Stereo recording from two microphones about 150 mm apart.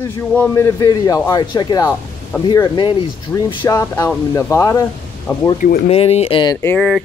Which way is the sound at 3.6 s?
15° left (ahead or behind).